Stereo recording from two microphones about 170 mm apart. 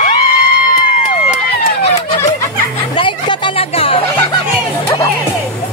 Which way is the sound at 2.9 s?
30° left (ahead or behind).